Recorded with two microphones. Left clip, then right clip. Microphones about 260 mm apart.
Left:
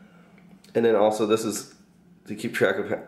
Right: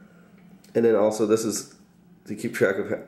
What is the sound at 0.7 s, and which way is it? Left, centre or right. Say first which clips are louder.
Speech: even; centre.